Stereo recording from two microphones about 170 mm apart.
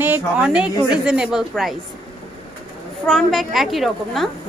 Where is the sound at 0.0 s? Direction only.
10° right (ahead or behind).